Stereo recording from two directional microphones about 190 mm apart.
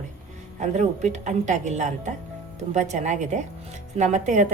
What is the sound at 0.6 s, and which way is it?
A woman's voice, 40° right (ahead or behind).